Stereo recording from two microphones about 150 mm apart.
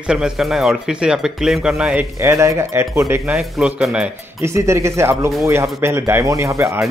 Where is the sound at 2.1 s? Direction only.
20° right (ahead or behind).